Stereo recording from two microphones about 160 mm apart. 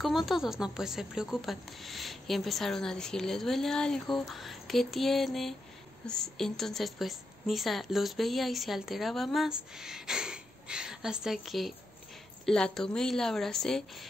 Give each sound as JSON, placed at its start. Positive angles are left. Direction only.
{"t": 0.0, "sound": "a woman's voice", "side_deg": 0}